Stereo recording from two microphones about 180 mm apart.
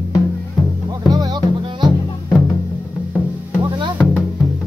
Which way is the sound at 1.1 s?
25° right (ahead or behind).